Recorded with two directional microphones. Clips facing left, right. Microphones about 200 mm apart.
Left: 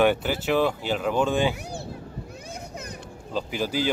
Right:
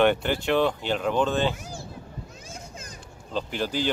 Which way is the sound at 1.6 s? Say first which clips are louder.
Left 4 dB; 65° left (ahead or behind).